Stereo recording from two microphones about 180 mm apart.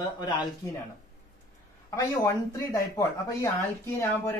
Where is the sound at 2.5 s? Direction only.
20° left (ahead or behind).